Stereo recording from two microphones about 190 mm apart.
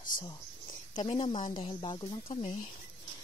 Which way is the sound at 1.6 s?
25° left (ahead or behind).